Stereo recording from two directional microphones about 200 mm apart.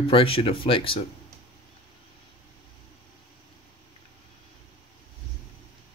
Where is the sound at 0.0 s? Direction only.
25° left (ahead or behind).